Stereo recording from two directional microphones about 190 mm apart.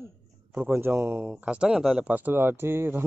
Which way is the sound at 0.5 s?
10° right (ahead or behind).